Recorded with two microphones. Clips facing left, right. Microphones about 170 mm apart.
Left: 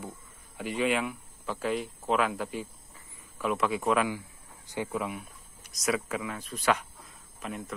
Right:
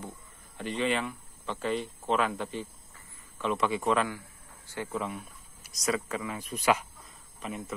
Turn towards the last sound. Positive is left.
turn(degrees=0)  # may be behind; listen again after turning